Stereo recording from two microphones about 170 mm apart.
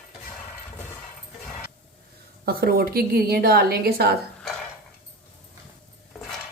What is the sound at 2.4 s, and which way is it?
A woman's voice, 65° right (ahead or behind).